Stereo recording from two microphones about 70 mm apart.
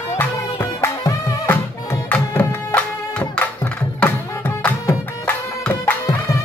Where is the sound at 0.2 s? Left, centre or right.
Left.